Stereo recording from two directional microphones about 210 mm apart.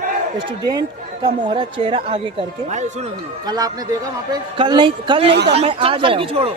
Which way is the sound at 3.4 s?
20° right (ahead or behind).